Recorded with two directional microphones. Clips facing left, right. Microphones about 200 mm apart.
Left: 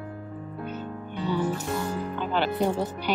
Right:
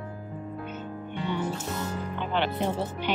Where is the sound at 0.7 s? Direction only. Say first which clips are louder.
Left 1 dB; 35° left (ahead or behind).